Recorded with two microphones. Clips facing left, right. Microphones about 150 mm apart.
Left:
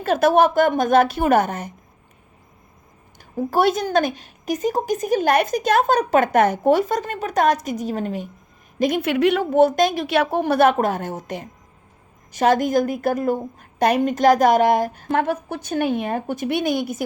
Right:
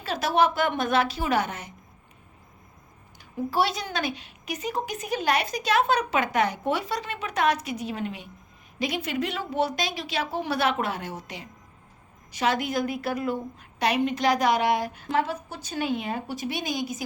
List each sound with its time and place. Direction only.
0.0 s speech: 50° left (ahead or behind)
3.5 s speech: 50° left (ahead or behind)
8.8 s speech: 55° left (ahead or behind)